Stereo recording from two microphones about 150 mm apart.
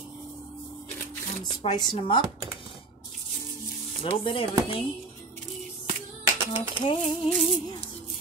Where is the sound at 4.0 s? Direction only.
35° left (ahead or behind).